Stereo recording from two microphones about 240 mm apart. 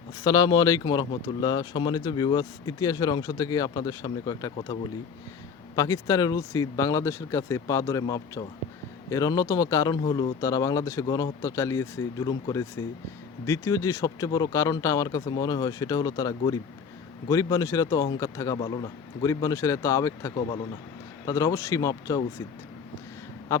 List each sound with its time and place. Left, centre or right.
0.3 s speech: centre